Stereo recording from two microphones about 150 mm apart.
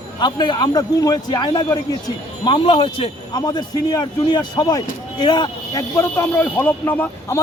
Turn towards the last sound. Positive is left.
turn(degrees=15)  # may be behind; listen again after turning